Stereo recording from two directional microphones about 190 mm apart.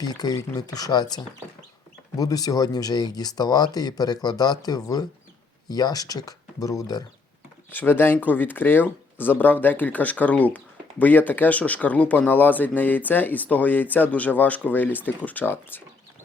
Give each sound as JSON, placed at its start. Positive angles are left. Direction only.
{"t": 0.0, "sound": "speech", "side_deg": 20}